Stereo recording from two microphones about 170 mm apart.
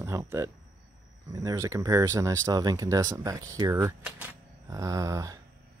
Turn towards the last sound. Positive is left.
turn(degrees=-20)  # may be behind; listen again after turning